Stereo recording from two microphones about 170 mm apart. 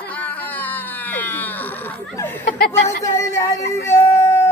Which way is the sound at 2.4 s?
55° left (ahead or behind).